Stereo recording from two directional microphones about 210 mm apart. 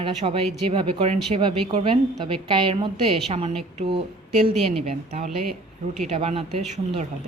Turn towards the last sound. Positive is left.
turn(degrees=-35)  # may be behind; listen again after turning